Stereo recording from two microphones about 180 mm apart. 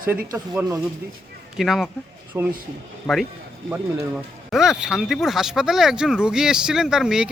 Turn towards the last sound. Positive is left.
turn(degrees=-5)  # may be behind; listen again after turning